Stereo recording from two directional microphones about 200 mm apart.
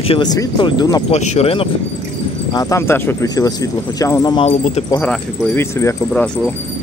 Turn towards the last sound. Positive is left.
turn(degrees=5)  # may be behind; listen again after turning